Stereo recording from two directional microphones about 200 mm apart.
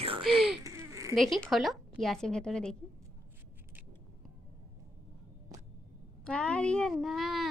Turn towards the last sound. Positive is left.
turn(degrees=0)  # may be behind; listen again after turning